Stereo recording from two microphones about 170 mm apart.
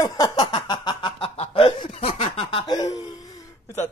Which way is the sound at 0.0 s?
20° left (ahead or behind).